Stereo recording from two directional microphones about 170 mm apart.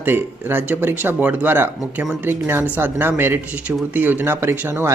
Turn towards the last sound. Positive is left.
turn(degrees=-15)  # may be behind; listen again after turning